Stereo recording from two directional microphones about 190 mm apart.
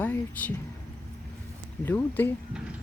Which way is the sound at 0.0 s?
10° left (ahead or behind).